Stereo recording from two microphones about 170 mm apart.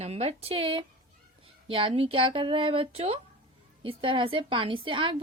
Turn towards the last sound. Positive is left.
turn(degrees=-30)  # may be behind; listen again after turning